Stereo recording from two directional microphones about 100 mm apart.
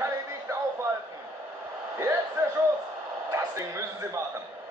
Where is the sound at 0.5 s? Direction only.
30° right (ahead or behind).